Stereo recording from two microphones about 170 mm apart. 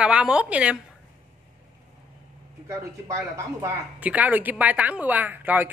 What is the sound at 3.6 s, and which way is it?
A woman's voice, 10° right (ahead or behind).